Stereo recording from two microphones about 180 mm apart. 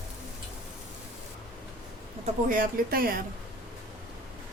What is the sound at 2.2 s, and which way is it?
Speech, 50° right (ahead or behind).